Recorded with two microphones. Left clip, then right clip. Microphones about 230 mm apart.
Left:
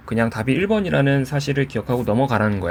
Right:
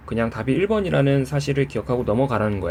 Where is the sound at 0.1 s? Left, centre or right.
Left.